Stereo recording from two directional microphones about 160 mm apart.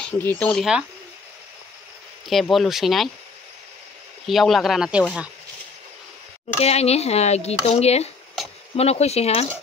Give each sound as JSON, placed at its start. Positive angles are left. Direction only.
{"t": 0.0, "sound": "speech", "side_deg": 10}
{"t": 2.2, "sound": "speech", "side_deg": 0}
{"t": 4.3, "sound": "speech", "side_deg": 0}
{"t": 6.6, "sound": "speech", "side_deg": 40}